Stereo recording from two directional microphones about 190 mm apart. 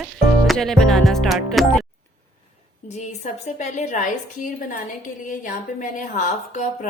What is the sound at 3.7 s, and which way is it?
Speech, 40° left (ahead or behind).